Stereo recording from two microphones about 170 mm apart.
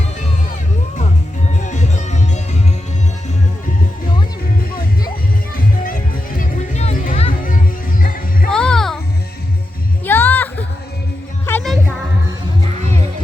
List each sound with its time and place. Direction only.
1.6 s music: 45° left (ahead or behind)
5.5 s music: 55° left (ahead or behind)
8.4 s music: 5° left (ahead or behind)
10.1 s music: 10° left (ahead or behind)